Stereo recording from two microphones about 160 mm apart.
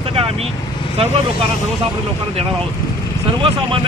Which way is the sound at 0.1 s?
40° right (ahead or behind).